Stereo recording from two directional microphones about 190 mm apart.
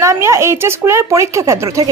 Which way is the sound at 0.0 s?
15° right (ahead or behind).